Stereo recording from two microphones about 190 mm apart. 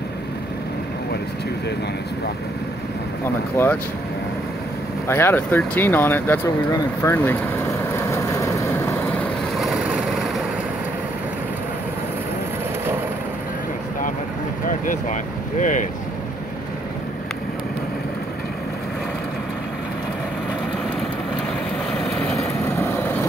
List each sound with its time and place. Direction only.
3.6 s speech: 10° left (ahead or behind)
5.0 s speech: 10° left (ahead or behind)
8.1 s vehicle: 15° left (ahead or behind)
9.6 s vehicle: centre (ahead or behind)
15.6 s speech: 40° left (ahead or behind)
22.1 s vehicle: 5° left (ahead or behind)